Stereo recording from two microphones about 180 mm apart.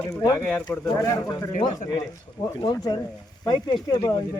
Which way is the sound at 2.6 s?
20° left (ahead or behind).